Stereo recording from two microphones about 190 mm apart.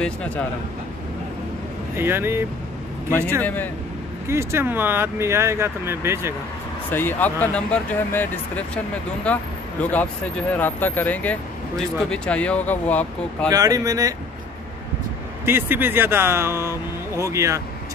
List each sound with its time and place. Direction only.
0.0 s speech: 5° left (ahead or behind)
2.0 s speech: 10° right (ahead or behind)
3.1 s speech: 10° left (ahead or behind)
4.3 s speech: 15° right (ahead or behind)
6.9 s speech: 10° left (ahead or behind)
10.6 s speech: 10° left (ahead or behind)
13.5 s speech: 20° right (ahead or behind)
15.4 s speech: 10° right (ahead or behind)